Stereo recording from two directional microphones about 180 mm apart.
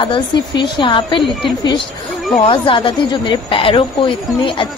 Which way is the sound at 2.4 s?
30° left (ahead or behind).